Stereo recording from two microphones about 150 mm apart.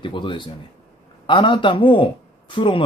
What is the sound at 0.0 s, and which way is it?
Speech, 35° left (ahead or behind).